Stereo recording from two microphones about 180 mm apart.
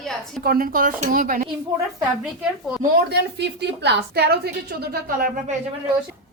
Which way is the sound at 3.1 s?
70° right (ahead or behind).